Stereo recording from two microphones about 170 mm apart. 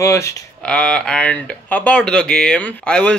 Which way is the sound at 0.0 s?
15° left (ahead or behind).